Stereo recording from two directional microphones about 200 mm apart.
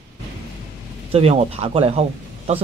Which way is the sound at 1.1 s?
30° right (ahead or behind).